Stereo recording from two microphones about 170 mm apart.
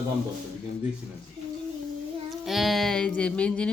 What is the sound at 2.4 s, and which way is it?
Music, centre (ahead or behind).